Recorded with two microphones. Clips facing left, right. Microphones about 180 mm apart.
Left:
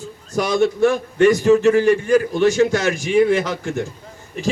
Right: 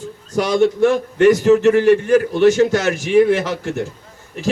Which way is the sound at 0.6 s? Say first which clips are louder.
Right 2 dB; 10° left (ahead or behind).